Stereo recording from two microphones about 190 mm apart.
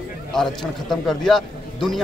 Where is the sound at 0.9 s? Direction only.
Centre (ahead or behind).